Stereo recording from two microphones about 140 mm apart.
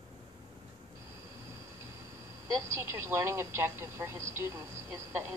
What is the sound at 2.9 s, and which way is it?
Speech, 20° right (ahead or behind).